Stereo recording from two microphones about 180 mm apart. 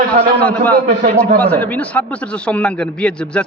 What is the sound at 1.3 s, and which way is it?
A man's voice, 10° left (ahead or behind).